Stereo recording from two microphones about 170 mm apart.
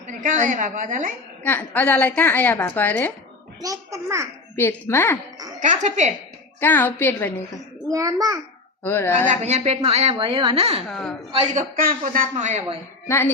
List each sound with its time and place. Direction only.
0.1 s a woman's voice: 50° right (ahead or behind)
1.5 s a woman's voice: 10° left (ahead or behind)
3.6 s a child's voice: 20° right (ahead or behind)
4.5 s a woman's voice: 15° left (ahead or behind)
5.5 s a woman's voice: 45° right (ahead or behind)
6.6 s a woman's voice: 10° left (ahead or behind)
7.9 s a child's voice: 20° right (ahead or behind)
8.8 s a woman's voice: 10° left (ahead or behind)
9.3 s a woman's voice: 40° right (ahead or behind)
10.8 s a woman's voice: centre (ahead or behind)
11.5 s a woman's voice: 55° right (ahead or behind)
13.1 s a woman's voice: 15° left (ahead or behind)